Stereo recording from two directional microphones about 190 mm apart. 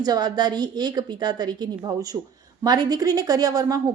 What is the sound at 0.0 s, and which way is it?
A woman's voice, 20° right (ahead or behind).